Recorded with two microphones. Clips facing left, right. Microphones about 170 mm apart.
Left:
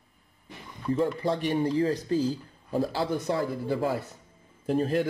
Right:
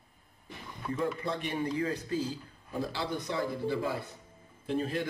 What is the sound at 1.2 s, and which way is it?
A man's voice, 35° left (ahead or behind).